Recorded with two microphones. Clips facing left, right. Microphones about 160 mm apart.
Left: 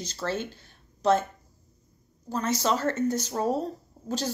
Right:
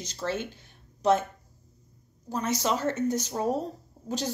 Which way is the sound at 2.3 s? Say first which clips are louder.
Left 1 dB; 15° right (ahead or behind).